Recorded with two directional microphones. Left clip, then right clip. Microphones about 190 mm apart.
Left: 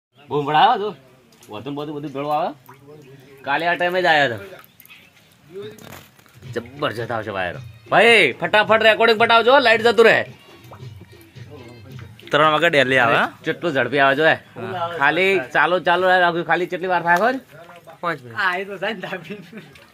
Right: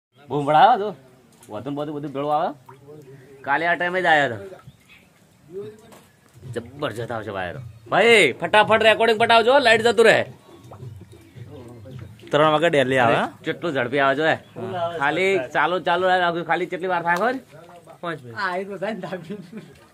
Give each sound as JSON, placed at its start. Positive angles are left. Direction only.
{"t": 0.3, "sound": "speech", "side_deg": -15}
{"t": 1.5, "sound": "speech", "side_deg": -5}
{"t": 3.4, "sound": "speech", "side_deg": 40}
{"t": 6.5, "sound": "speech", "side_deg": 25}
{"t": 12.3, "sound": "speech", "side_deg": -10}
{"t": 13.4, "sound": "speech", "side_deg": 35}
{"t": 18.3, "sound": "a woman's voice", "side_deg": -75}